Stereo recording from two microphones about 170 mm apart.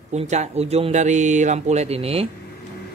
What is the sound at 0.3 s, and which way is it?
Speech, 40° right (ahead or behind).